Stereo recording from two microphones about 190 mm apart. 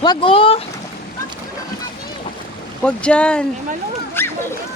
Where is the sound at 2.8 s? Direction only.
5° left (ahead or behind).